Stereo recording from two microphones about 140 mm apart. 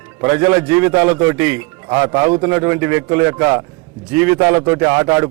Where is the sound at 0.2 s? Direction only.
20° right (ahead or behind).